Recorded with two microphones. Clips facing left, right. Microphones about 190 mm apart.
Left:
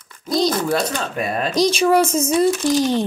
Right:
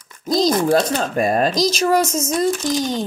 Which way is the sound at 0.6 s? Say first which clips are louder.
Right 4 dB; 30° right (ahead or behind).